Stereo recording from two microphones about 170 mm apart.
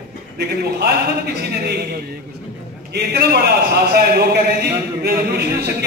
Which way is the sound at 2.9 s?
75° right (ahead or behind).